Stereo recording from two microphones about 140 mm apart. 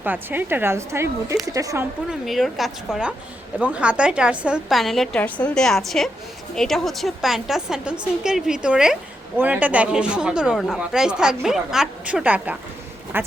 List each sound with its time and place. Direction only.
0.0 s speech: 15° right (ahead or behind)
2.0 s a woman's voice: centre (ahead or behind)
13.1 s a sound: 15° right (ahead or behind)